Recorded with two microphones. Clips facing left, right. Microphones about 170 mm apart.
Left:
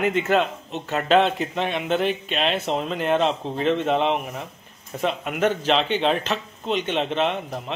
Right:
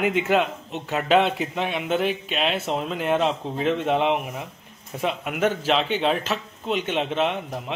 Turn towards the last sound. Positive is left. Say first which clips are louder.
# left 1 dB
turn(degrees=-5)  # may be behind; listen again after turning